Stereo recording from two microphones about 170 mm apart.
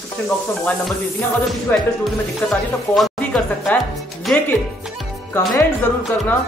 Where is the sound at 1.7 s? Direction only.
10° left (ahead or behind).